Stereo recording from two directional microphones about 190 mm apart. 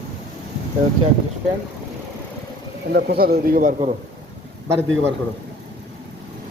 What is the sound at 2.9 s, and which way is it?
Speech, 55° right (ahead or behind).